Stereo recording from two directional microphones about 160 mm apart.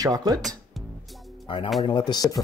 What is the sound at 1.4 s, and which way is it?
Speech, 30° left (ahead or behind).